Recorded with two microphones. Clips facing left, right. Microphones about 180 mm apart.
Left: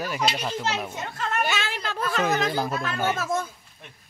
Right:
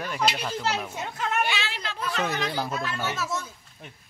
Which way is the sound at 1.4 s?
45° left (ahead or behind).